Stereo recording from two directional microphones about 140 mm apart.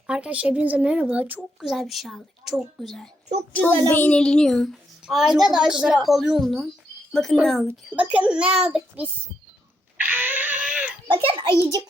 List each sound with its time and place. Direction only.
0.1 s a child's voice: 10° right (ahead or behind)
3.5 s a child's voice: 15° left (ahead or behind)
7.9 s speech: 10° right (ahead or behind)
10.0 s a sound: 15° right (ahead or behind)
11.1 s a child's voice: 40° right (ahead or behind)